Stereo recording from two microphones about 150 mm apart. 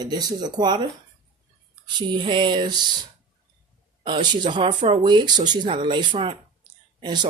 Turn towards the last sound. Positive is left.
turn(degrees=-30)  # may be behind; listen again after turning